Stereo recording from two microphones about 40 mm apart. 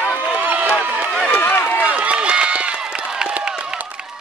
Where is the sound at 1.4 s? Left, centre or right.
Left.